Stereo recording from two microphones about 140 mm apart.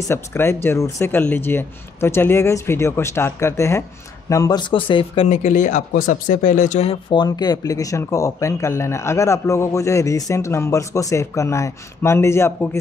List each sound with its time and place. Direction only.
0.1 s speech: 20° left (ahead or behind); by 6.9 s 60° left (ahead or behind)
6.9 s speech: 35° left (ahead or behind)